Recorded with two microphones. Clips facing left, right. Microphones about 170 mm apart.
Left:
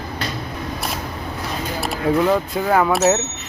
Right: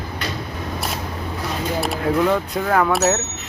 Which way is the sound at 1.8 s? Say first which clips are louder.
Left 1 dB; centre (ahead or behind).